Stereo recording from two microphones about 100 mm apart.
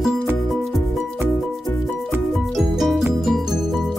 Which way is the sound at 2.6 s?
Centre (ahead or behind).